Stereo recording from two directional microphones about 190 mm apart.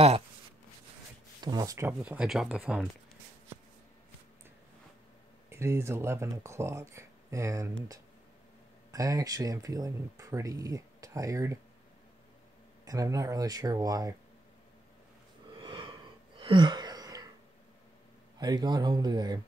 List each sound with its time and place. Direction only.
1.4 s speech: 20° right (ahead or behind); by 2.9 s 5° right (ahead or behind)
5.5 s speech: 15° right (ahead or behind)
8.9 s speech: 20° right (ahead or behind)
12.8 s speech: 20° right (ahead or behind)
15.6 s gasp: 25° right (ahead or behind)
16.3 s a sound: 25° right (ahead or behind)
18.4 s speech: 20° right (ahead or behind)